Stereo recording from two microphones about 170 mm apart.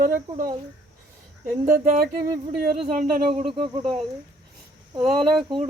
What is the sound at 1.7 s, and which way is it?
Speech, 60° right (ahead or behind).